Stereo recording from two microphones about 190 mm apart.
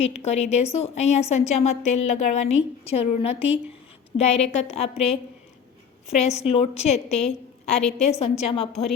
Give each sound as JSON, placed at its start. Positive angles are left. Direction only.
{"t": 0.3, "sound": "a woman's voice", "side_deg": 35}
{"t": 7.7, "sound": "a woman's voice", "side_deg": 0}
{"t": 8.2, "sound": "a woman's voice", "side_deg": 30}